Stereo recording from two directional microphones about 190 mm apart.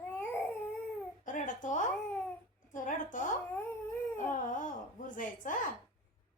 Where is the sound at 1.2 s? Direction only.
40° left (ahead or behind).